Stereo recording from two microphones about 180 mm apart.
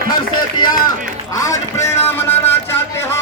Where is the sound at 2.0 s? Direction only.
10° left (ahead or behind).